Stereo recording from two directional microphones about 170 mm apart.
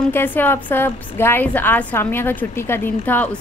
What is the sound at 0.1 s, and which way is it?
A woman's voice, 10° left (ahead or behind).